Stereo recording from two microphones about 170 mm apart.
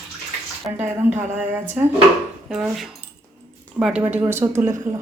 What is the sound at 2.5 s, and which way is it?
A woman's voice, 5° right (ahead or behind).